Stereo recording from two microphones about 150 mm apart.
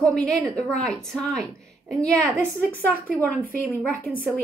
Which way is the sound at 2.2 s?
20° right (ahead or behind).